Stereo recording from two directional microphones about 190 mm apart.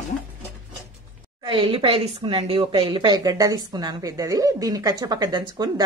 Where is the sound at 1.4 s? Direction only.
30° right (ahead or behind).